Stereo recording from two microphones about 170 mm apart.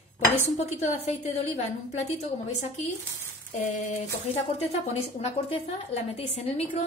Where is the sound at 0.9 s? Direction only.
40° left (ahead or behind).